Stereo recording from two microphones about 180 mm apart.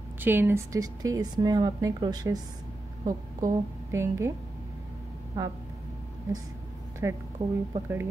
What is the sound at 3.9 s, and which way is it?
Speech, 15° right (ahead or behind).